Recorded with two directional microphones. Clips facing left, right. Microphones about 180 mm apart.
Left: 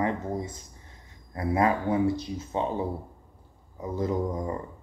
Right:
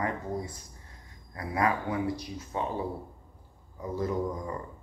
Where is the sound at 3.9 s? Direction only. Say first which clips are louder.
Left 3 dB; 20° left (ahead or behind).